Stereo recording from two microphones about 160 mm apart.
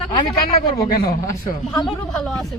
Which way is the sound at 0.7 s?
20° left (ahead or behind).